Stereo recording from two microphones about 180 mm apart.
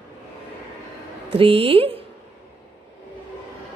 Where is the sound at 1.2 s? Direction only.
30° right (ahead or behind).